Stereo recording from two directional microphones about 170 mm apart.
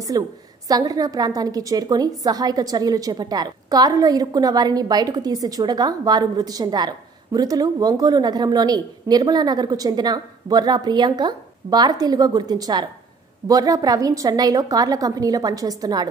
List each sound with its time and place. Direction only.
0.1 s a woman's voice: 20° right (ahead or behind)